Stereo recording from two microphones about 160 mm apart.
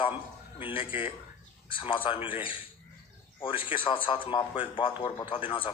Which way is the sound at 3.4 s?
30° left (ahead or behind).